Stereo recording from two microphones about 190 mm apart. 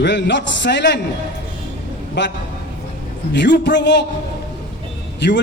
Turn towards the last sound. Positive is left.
turn(degrees=65)  # may be behind; listen again after turning